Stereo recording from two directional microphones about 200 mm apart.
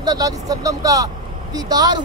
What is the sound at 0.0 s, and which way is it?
Speech, 20° right (ahead or behind).